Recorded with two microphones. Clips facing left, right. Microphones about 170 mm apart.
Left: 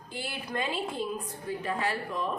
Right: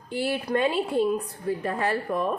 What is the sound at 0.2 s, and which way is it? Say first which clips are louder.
A woman's voice: right 10 dB; 65° right (ahead or behind).